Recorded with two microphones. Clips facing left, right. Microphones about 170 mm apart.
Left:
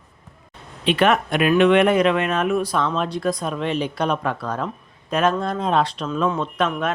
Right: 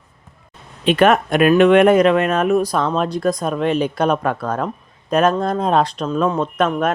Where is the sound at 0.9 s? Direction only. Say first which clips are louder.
Right 4 dB; 45° right (ahead or behind).